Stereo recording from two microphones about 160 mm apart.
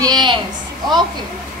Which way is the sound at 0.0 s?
25° right (ahead or behind).